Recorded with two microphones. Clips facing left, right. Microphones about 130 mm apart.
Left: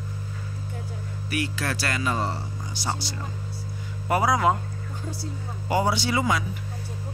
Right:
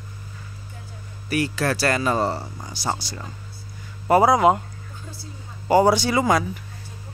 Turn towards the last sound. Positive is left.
turn(degrees=-45)  # may be behind; listen again after turning